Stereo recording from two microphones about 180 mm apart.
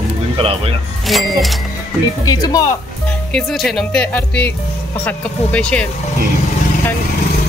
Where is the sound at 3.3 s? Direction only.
5° left (ahead or behind).